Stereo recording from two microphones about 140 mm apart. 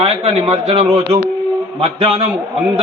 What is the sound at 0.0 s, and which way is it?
A man's voice, 45° right (ahead or behind).